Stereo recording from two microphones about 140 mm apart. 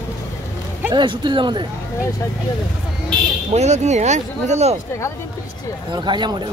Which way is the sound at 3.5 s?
55° right (ahead or behind).